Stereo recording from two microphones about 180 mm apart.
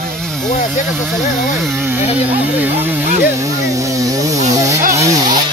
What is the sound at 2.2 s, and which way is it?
Speech, 10° right (ahead or behind).